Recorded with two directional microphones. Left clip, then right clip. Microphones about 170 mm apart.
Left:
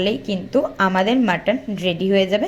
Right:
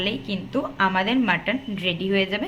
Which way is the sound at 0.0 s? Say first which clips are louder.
Left 5 dB; 25° left (ahead or behind).